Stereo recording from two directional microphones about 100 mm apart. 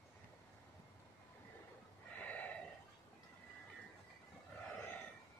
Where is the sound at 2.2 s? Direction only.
15° left (ahead or behind).